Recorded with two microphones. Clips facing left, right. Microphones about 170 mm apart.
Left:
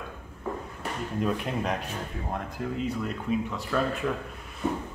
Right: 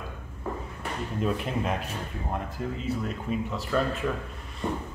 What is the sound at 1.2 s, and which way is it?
Speech, centre (ahead or behind).